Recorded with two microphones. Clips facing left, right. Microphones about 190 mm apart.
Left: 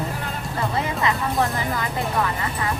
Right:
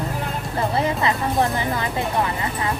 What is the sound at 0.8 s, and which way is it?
Speech, 30° right (ahead or behind).